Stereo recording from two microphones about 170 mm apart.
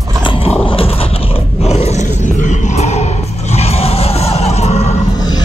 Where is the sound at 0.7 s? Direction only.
35° left (ahead or behind).